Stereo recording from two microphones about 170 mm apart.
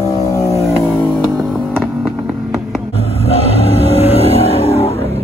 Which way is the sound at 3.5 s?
35° right (ahead or behind).